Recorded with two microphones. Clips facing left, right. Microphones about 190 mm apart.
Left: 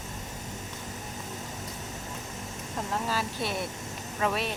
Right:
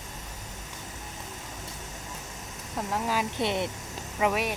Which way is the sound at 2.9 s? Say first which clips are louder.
Right 2 dB; 15° right (ahead or behind).